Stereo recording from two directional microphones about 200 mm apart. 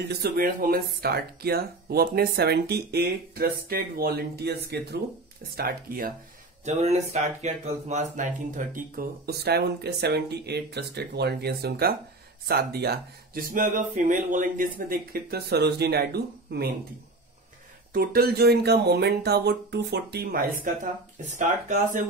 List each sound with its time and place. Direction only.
0.2 s speech: 45° right (ahead or behind)
6.6 s speech: 35° right (ahead or behind); by 16.7 s 50° right (ahead or behind)
17.9 s speech: 45° right (ahead or behind)